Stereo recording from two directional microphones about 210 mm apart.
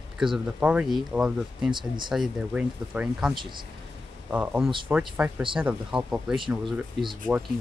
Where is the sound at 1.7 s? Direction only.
20° right (ahead or behind).